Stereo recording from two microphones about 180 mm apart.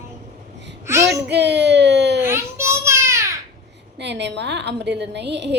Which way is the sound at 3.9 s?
75° right (ahead or behind).